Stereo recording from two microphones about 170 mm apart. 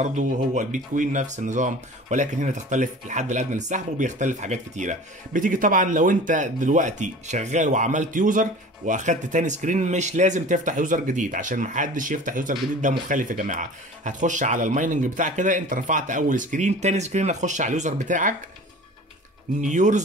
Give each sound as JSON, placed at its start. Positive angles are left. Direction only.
{"t": 0.0, "sound": "speech", "side_deg": -45}
{"t": 19.6, "sound": "speech", "side_deg": -45}